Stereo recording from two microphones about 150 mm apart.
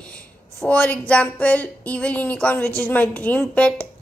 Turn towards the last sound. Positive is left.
turn(degrees=5)  # may be behind; listen again after turning